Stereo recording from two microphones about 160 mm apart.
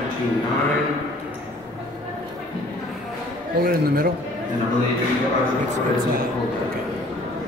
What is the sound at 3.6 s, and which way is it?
Speech, 70° right (ahead or behind).